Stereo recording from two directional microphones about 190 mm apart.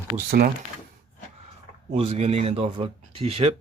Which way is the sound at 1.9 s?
30° right (ahead or behind).